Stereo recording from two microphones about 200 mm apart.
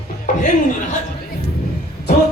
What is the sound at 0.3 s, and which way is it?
Chuckle, 40° left (ahead or behind).